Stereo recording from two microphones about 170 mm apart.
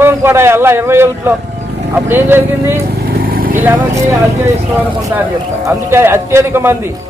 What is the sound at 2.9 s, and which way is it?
Vehicle, 60° right (ahead or behind).